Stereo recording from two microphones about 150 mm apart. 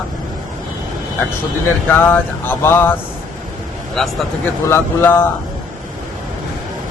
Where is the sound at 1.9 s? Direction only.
15° left (ahead or behind).